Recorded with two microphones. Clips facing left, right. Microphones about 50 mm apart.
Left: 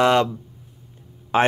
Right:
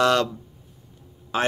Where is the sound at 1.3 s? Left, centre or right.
Left.